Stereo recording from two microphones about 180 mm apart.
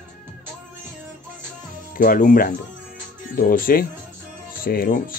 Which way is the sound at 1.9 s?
50° left (ahead or behind).